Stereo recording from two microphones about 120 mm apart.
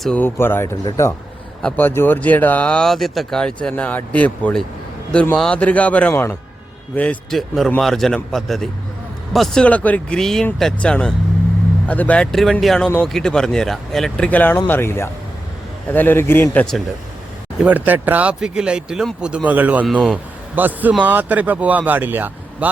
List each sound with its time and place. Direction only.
0.2 s speech: 20° left (ahead or behind)
17.6 s speech: 15° right (ahead or behind)